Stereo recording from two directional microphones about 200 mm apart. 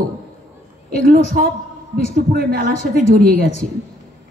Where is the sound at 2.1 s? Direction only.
50° right (ahead or behind).